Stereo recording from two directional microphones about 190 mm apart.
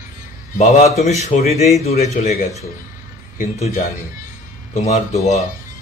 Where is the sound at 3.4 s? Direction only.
45° left (ahead or behind).